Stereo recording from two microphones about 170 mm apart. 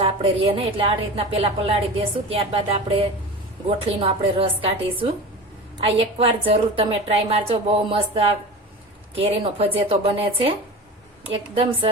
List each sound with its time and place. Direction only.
0.0 s a woman's voice: 30° right (ahead or behind)